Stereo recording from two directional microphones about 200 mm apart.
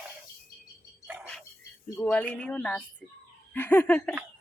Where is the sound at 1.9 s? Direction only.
10° left (ahead or behind).